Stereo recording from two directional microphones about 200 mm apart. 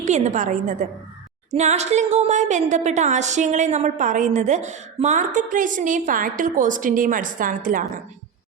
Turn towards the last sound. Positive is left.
turn(degrees=-45)  # may be behind; listen again after turning